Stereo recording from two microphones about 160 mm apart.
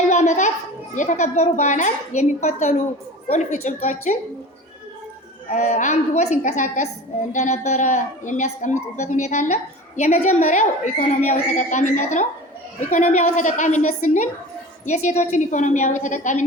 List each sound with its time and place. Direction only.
0.0 s a child's voice: 50° left (ahead or behind)
5.5 s a woman's voice: 45° left (ahead or behind)